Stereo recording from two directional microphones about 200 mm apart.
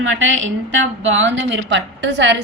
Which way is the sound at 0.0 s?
75° right (ahead or behind).